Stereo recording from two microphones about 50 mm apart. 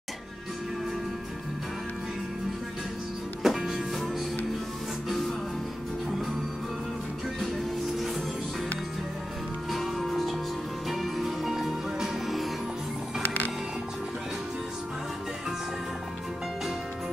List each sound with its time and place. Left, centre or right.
3.4 s music: centre
8.0 s music: centre
9.7 s music: centre
13.2 s music: left